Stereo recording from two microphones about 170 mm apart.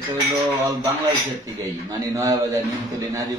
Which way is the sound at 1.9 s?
20° right (ahead or behind).